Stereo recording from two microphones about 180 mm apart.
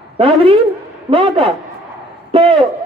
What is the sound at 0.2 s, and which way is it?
A man's voice, 30° right (ahead or behind).